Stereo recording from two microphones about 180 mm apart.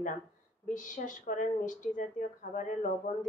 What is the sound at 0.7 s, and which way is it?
A woman's voice, 45° left (ahead or behind).